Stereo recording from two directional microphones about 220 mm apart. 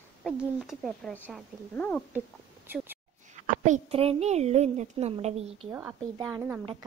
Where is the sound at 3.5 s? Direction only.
35° right (ahead or behind).